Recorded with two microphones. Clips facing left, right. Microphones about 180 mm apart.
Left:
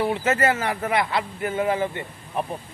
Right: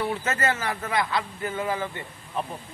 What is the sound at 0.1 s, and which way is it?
Speech, 25° left (ahead or behind).